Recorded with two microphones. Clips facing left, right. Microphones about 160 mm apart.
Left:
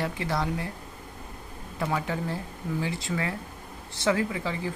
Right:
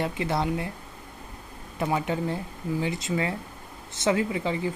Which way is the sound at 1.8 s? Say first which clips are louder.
Right 3 dB; 20° right (ahead or behind).